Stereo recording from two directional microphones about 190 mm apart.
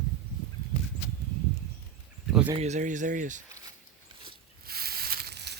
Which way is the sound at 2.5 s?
35° right (ahead or behind).